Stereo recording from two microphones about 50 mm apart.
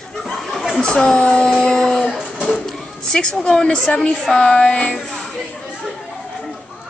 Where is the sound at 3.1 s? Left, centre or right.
Centre.